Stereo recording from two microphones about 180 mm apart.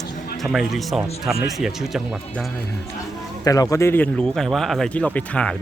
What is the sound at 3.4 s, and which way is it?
Speech, 20° left (ahead or behind).